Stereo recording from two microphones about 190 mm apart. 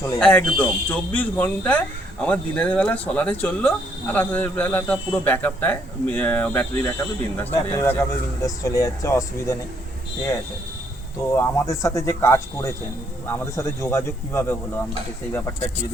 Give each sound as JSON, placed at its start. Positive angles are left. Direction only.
{"t": 0.2, "sound": "speech", "side_deg": 5}
{"t": 11.3, "sound": "speech", "side_deg": 15}